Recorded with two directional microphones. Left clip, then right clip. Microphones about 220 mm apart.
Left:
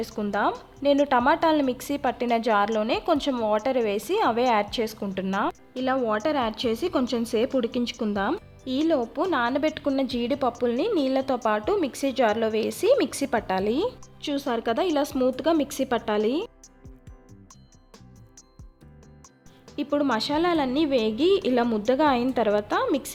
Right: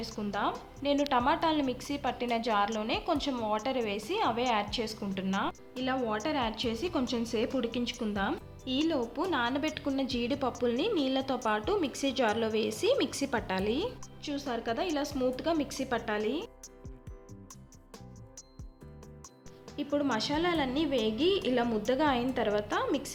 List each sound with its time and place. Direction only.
0.2 s a woman's voice: 35° left (ahead or behind)
19.7 s a woman's voice: 35° left (ahead or behind)